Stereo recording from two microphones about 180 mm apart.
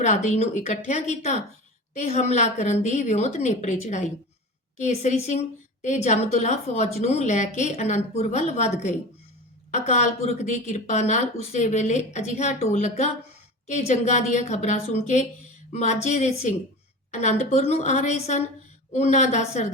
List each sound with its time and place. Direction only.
0.0 s a woman's voice: 40° left (ahead or behind)